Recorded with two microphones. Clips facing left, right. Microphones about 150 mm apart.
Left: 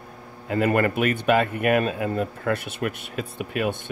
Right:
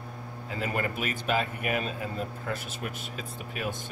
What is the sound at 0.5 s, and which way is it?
Speech, 65° left (ahead or behind).